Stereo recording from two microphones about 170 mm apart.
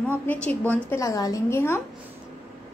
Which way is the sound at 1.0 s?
20° left (ahead or behind).